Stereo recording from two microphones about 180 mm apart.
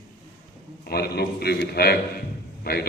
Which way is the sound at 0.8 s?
60° left (ahead or behind).